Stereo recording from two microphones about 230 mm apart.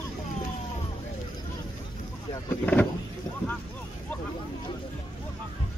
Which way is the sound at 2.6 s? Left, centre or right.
Centre.